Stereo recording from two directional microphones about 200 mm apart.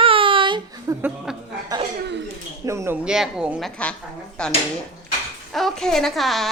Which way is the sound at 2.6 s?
15° right (ahead or behind).